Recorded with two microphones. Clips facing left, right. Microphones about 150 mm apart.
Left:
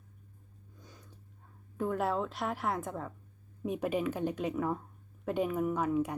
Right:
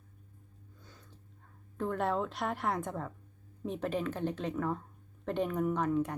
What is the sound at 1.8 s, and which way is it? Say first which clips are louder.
A woman's voice: left 1 dB; 5° left (ahead or behind).